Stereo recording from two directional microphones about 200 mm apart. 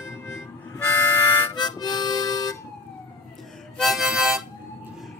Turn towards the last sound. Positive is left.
turn(degrees=-5)  # may be behind; listen again after turning